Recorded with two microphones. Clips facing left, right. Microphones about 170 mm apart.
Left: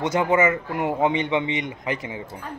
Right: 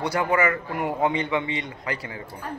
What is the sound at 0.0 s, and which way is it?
A man's voice, 20° left (ahead or behind).